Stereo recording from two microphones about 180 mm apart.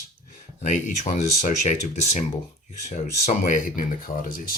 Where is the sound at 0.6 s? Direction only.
40° left (ahead or behind).